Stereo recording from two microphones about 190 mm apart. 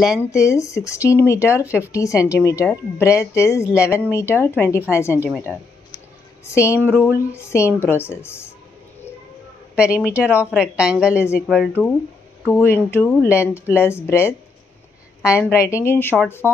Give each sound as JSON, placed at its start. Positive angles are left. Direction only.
{"t": 0.2, "sound": "speech", "side_deg": 15}
{"t": 6.4, "sound": "speech", "side_deg": 15}
{"t": 9.8, "sound": "speech", "side_deg": -5}
{"t": 12.5, "sound": "speech", "side_deg": 10}
{"t": 15.3, "sound": "speech", "side_deg": 15}